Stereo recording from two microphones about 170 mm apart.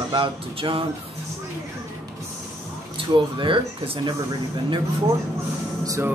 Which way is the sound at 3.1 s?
30° right (ahead or behind).